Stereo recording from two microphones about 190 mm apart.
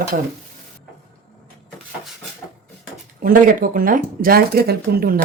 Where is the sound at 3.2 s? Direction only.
50° right (ahead or behind).